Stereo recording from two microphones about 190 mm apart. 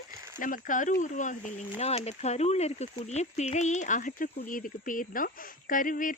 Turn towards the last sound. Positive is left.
turn(degrees=45)  # may be behind; listen again after turning